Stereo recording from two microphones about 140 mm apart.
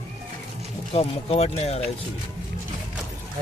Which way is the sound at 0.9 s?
45° left (ahead or behind).